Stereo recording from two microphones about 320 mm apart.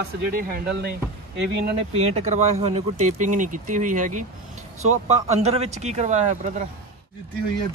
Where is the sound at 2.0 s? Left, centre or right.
Centre.